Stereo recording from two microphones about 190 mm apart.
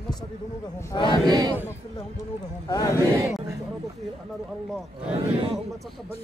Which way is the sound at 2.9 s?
15° right (ahead or behind).